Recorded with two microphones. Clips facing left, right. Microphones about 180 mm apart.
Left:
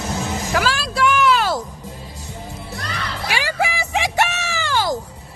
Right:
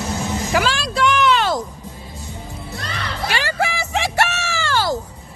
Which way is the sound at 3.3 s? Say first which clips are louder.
Even; 10° left (ahead or behind).